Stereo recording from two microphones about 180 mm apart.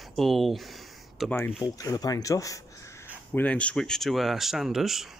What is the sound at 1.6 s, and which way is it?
Speech, 20° left (ahead or behind).